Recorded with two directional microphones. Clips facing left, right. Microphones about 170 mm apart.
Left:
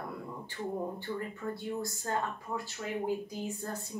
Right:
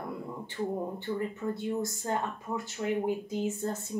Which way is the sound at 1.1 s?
20° right (ahead or behind).